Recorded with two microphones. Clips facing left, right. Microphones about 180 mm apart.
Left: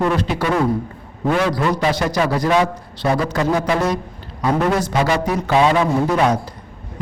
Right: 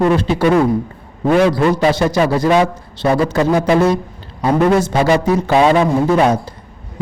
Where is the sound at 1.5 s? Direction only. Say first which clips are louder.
Right 5 dB; 25° right (ahead or behind).